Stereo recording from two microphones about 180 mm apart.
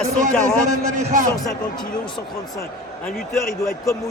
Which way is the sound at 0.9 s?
45° right (ahead or behind).